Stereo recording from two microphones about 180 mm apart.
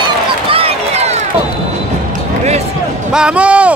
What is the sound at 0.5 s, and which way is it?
Run, 30° right (ahead or behind).